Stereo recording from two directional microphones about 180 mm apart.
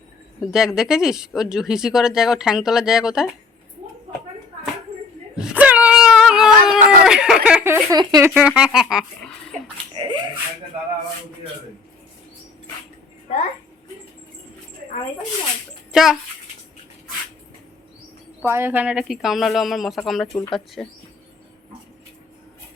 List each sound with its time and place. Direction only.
0.5 s speech: 5° right (ahead or behind)
5.4 s a sound: 10° right (ahead or behind)
7.9 s speech: 20° right (ahead or behind)
8.3 s speech: 5° right (ahead or behind)
9.9 s a sound: 30° right (ahead or behind)
15.9 s a child's voice: centre (ahead or behind)
18.4 s speech: 15° right (ahead or behind)